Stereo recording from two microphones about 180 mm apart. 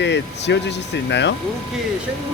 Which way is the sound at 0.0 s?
75° left (ahead or behind).